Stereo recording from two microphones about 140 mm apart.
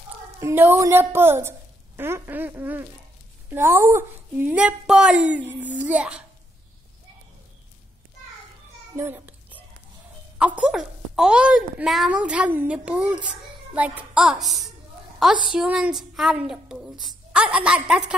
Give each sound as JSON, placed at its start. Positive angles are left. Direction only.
{"t": 0.4, "sound": "a child's voice", "side_deg": -15}
{"t": 8.9, "sound": "a sound", "side_deg": -15}
{"t": 10.4, "sound": "a child's voice", "side_deg": -10}